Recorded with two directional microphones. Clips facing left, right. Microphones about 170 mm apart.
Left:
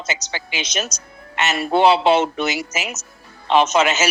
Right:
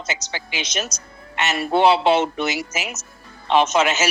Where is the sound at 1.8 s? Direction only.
90° left.